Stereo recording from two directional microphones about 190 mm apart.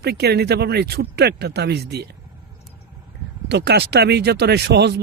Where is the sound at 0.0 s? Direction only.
60° right (ahead or behind).